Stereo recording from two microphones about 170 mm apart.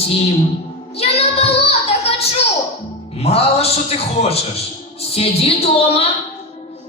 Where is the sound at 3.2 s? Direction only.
35° left (ahead or behind).